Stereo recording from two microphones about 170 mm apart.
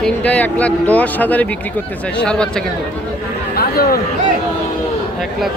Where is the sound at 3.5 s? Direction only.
65° left (ahead or behind).